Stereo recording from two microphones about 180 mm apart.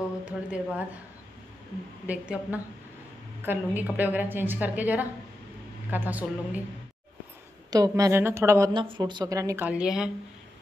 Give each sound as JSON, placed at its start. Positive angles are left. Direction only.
{"t": 0.2, "sound": "a woman's voice", "side_deg": -5}
{"t": 2.0, "sound": "a woman's voice", "side_deg": -5}
{"t": 7.7, "sound": "a woman's voice", "side_deg": -20}
{"t": 9.7, "sound": "speech", "side_deg": -5}